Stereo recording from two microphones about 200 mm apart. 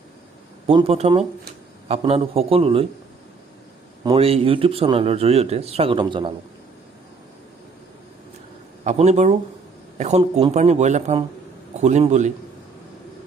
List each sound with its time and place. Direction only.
0.7 s speech: 30° right (ahead or behind)
4.0 s speech: 25° right (ahead or behind)
8.8 s speech: 35° right (ahead or behind)